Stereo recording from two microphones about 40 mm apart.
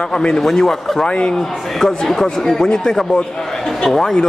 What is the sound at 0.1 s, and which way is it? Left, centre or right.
Speech, centre.